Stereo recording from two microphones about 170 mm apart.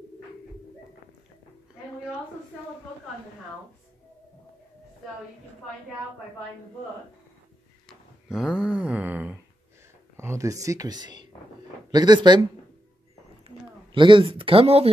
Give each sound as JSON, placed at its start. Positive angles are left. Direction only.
{"t": 7.9, "sound": "a sound", "side_deg": -5}
{"t": 10.1, "sound": "speech", "side_deg": -15}
{"t": 13.7, "sound": "speech", "side_deg": -30}